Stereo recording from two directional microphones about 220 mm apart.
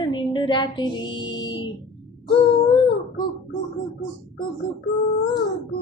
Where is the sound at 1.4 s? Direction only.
20° left (ahead or behind).